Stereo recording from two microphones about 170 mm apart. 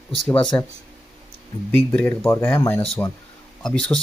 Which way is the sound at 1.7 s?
10° left (ahead or behind).